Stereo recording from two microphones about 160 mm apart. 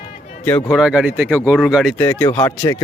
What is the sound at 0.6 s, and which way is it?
Speech, 5° right (ahead or behind).